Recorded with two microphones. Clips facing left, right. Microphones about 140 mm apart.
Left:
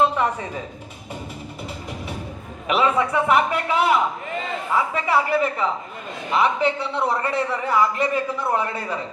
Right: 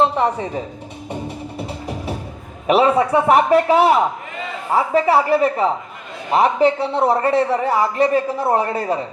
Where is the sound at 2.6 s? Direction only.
35° right (ahead or behind).